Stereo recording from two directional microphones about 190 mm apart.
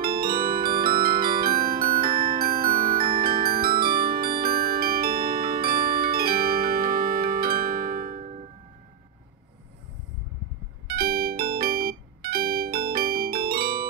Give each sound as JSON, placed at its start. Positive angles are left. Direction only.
{"t": 0.0, "sound": "glockenspiel", "side_deg": -50}
{"t": 10.9, "sound": "music", "side_deg": -50}